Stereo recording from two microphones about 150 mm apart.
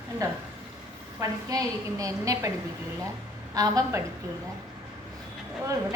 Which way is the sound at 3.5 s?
25° right (ahead or behind).